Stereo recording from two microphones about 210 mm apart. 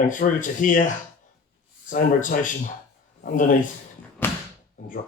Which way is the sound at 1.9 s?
40° left (ahead or behind).